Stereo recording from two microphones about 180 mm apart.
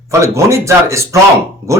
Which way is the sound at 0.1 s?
15° right (ahead or behind).